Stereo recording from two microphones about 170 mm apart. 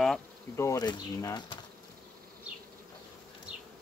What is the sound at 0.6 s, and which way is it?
Speech, 20° left (ahead or behind).